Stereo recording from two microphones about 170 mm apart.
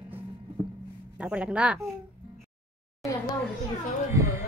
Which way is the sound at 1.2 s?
5° right (ahead or behind).